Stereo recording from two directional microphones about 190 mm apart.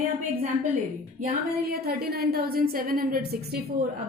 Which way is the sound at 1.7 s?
55° right (ahead or behind).